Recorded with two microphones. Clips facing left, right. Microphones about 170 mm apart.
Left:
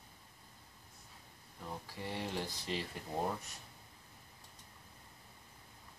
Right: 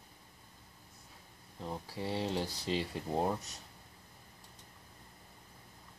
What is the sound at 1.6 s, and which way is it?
Speech, 30° right (ahead or behind).